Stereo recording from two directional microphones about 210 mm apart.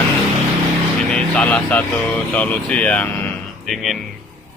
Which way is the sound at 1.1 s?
5° left (ahead or behind).